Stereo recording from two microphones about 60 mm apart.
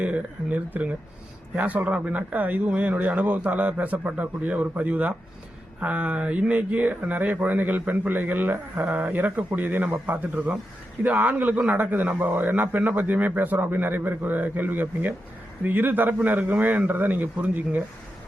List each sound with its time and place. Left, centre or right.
0.0 s a man's voice: right